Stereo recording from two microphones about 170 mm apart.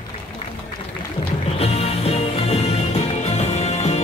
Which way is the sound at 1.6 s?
35° left (ahead or behind).